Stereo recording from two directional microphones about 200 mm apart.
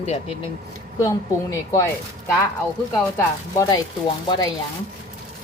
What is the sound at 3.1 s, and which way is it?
Speech, 15° left (ahead or behind).